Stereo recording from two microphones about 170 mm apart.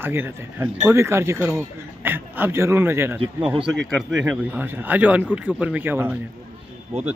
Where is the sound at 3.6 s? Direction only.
Centre (ahead or behind).